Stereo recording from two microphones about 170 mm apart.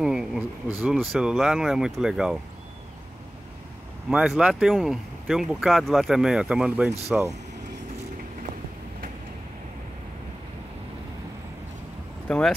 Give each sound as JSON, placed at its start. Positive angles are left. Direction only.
{"t": 0.0, "sound": "a sound", "side_deg": -5}
{"t": 1.1, "sound": "speech", "side_deg": 0}
{"t": 4.1, "sound": "speech", "side_deg": -5}
{"t": 7.1, "sound": "speech", "side_deg": -15}
{"t": 12.3, "sound": "speech", "side_deg": 5}